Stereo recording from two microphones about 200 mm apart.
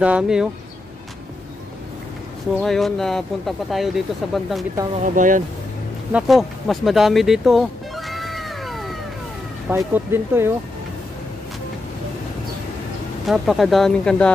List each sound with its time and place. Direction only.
0.0 s speech: 5° right (ahead or behind)
2.6 s speech: centre (ahead or behind)
5.0 s speech: 40° right (ahead or behind)
6.1 s a sound: centre (ahead or behind)
9.7 s speech: 10° right (ahead or behind)
13.3 s speech: centre (ahead or behind)